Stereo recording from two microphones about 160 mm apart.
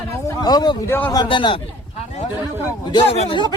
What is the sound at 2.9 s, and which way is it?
Speech, 35° left (ahead or behind).